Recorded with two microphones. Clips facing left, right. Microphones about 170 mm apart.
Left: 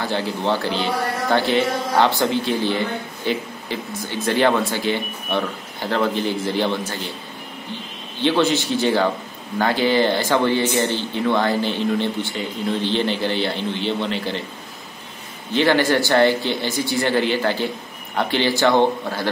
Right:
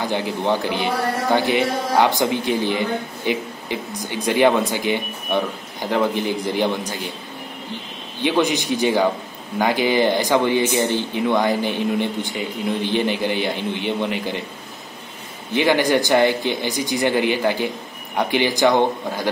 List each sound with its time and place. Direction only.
0.0 s speech: 15° right (ahead or behind)
8.2 s speech: 15° right (ahead or behind)
15.5 s speech: 15° right (ahead or behind)